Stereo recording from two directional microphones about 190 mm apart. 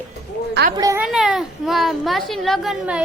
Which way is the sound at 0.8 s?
15° right (ahead or behind).